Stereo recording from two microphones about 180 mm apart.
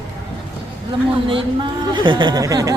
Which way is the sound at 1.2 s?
25° right (ahead or behind).